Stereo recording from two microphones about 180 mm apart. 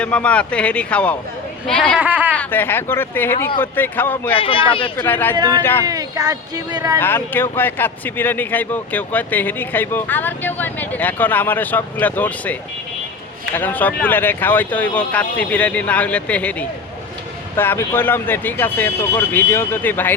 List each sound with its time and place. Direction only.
0.0 s speech: 5° left (ahead or behind)
2.0 s speech: 10° right (ahead or behind)
2.3 s speech: 10° left (ahead or behind)
4.4 s speech: 30° left (ahead or behind)
5.0 s speech: 10° left (ahead or behind)
5.4 s speech: 20° right (ahead or behind)
7.0 s speech: 10° left (ahead or behind)